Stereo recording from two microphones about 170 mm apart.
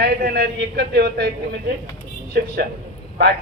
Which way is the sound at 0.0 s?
70° right (ahead or behind).